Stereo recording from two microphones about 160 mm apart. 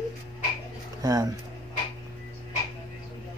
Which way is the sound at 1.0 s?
20° right (ahead or behind).